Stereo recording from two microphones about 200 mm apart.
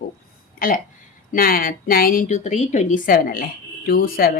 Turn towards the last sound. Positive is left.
turn(degrees=45)  # may be behind; listen again after turning